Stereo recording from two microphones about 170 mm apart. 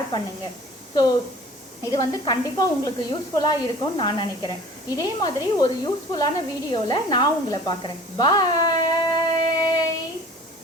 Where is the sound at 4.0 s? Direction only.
25° left (ahead or behind).